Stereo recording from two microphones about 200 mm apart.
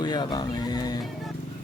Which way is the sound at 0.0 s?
20° left (ahead or behind).